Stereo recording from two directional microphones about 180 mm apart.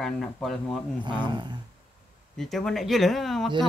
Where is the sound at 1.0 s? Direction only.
25° right (ahead or behind).